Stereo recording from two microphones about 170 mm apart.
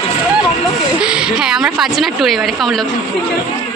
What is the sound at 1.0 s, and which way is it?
A woman's voice, 5° right (ahead or behind).